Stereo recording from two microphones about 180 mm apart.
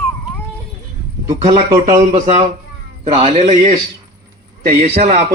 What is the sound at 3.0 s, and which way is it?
Speech, 35° right (ahead or behind).